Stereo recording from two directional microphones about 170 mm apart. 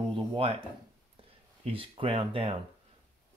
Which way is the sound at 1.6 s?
30° right (ahead or behind).